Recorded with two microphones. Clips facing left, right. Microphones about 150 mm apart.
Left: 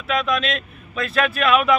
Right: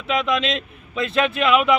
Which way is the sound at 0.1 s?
20° right (ahead or behind).